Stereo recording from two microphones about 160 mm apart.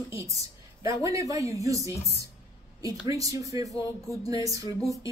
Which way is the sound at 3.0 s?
20° right (ahead or behind).